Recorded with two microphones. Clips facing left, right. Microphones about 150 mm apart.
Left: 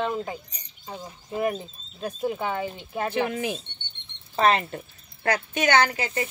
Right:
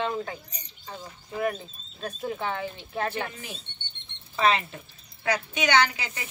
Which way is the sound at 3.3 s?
70° left (ahead or behind).